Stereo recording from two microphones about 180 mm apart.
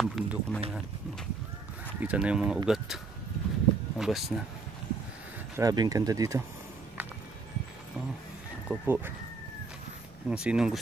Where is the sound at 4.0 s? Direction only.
Centre (ahead or behind).